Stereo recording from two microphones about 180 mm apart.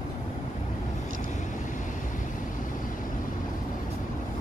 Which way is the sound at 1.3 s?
45° left (ahead or behind).